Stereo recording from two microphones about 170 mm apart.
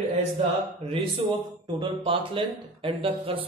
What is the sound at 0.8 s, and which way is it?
Speech, 35° right (ahead or behind).